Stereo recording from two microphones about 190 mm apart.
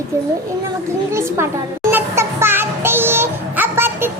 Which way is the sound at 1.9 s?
10° right (ahead or behind).